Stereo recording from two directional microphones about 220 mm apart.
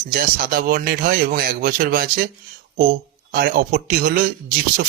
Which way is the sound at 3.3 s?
40° right (ahead or behind).